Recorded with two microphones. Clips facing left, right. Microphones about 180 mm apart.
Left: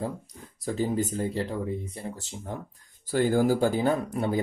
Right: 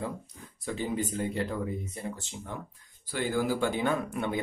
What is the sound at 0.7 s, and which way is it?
Speech, 40° left (ahead or behind).